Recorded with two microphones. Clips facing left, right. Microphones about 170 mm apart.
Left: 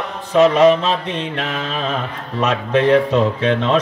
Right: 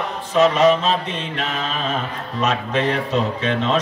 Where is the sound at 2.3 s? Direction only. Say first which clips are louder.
Left 4 dB; 60° left (ahead or behind).